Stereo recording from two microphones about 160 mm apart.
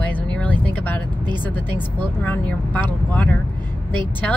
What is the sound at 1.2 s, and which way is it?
Speech, 30° right (ahead or behind).